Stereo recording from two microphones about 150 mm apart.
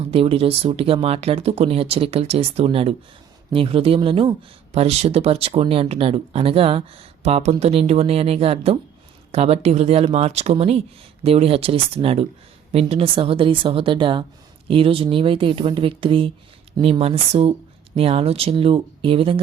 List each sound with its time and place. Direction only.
0.1 s speech: 40° right (ahead or behind)